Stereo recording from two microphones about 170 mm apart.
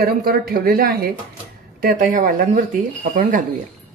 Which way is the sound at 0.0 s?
65° right (ahead or behind).